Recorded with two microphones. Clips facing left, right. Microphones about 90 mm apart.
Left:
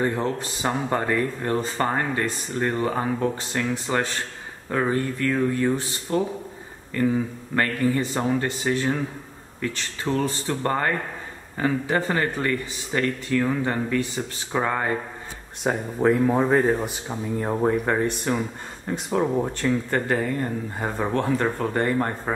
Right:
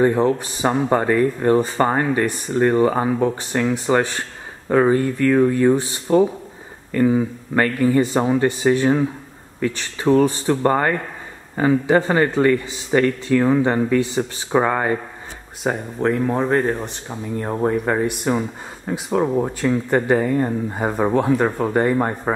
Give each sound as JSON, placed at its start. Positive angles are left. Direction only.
{"t": 0.0, "sound": "speech", "side_deg": -15}
{"t": 7.0, "sound": "speech", "side_deg": -20}
{"t": 11.9, "sound": "speech", "side_deg": -25}
{"t": 15.6, "sound": "speech", "side_deg": 0}